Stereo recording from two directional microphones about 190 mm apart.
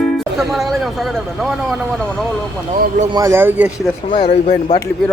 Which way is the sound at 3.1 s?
20° right (ahead or behind).